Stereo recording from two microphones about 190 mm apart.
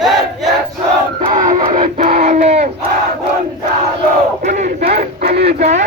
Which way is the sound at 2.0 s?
35° right (ahead or behind).